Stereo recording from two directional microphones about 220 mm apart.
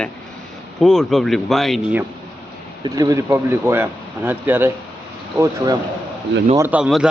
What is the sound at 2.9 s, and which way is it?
Speech, 15° right (ahead or behind).